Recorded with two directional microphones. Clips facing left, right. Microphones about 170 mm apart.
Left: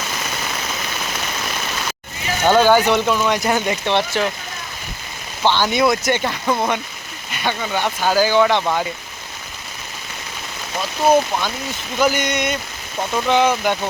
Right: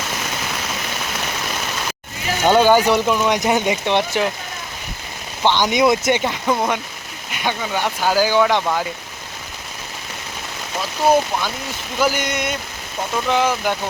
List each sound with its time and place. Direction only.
2.5 s speech: 15° right (ahead or behind)
5.4 s speech: 15° right (ahead or behind)
8.6 s speech: centre (ahead or behind)
11.9 s speech: 5° right (ahead or behind)